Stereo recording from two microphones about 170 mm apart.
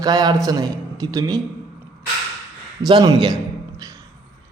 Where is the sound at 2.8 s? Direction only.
20° right (ahead or behind).